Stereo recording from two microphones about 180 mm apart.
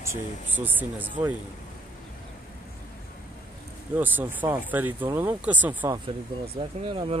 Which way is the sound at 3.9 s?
10° right (ahead or behind).